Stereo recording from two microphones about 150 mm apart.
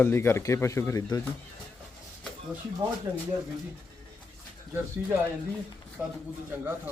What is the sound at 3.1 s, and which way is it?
Speech, 10° right (ahead or behind).